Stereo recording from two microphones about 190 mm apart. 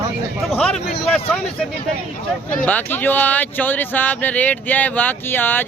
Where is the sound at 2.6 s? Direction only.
10° left (ahead or behind).